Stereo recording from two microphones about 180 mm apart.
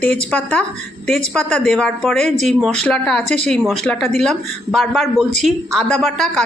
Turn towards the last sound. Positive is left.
turn(degrees=5)  # may be behind; listen again after turning